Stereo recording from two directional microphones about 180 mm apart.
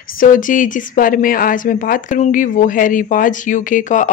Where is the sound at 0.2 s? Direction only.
50° left (ahead or behind).